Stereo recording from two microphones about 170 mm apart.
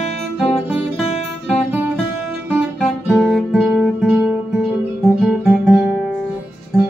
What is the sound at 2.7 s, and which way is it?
Guitar, centre (ahead or behind).